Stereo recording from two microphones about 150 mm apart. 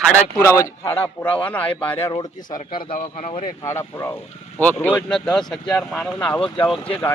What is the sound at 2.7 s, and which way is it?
Speech, 40° left (ahead or behind).